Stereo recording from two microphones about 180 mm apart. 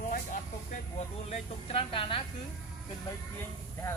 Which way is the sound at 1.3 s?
30° left (ahead or behind).